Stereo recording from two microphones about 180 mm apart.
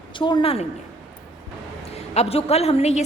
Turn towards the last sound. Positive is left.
turn(degrees=35)  # may be behind; listen again after turning